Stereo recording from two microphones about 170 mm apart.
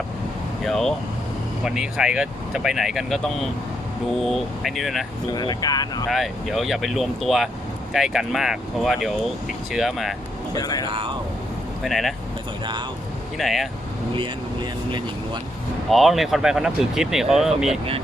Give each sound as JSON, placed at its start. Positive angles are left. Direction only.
{"t": 0.6, "sound": "speech", "side_deg": 0}
{"t": 5.3, "sound": "speech", "side_deg": 25}
{"t": 6.1, "sound": "speech", "side_deg": 0}
{"t": 10.5, "sound": "speech", "side_deg": 20}
{"t": 10.8, "sound": "speech", "side_deg": -30}
{"t": 11.8, "sound": "speech", "side_deg": 0}
{"t": 13.4, "sound": "speech", "side_deg": 0}
{"t": 14.2, "sound": "speech", "side_deg": -30}
{"t": 15.9, "sound": "speech", "side_deg": 0}